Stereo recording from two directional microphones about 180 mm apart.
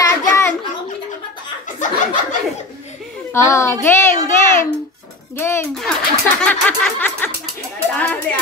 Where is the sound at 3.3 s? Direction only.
15° left (ahead or behind).